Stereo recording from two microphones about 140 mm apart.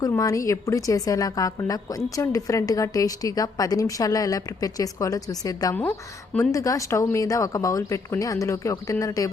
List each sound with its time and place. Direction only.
0.0 s a woman's voice: 25° left (ahead or behind)